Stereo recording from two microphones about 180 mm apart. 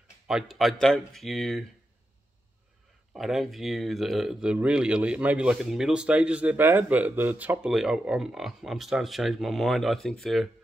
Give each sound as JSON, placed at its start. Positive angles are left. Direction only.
{"t": 0.3, "sound": "speech", "side_deg": 0}
{"t": 3.1, "sound": "speech", "side_deg": 0}